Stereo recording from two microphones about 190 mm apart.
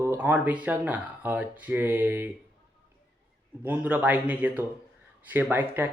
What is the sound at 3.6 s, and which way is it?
Speech, 10° right (ahead or behind).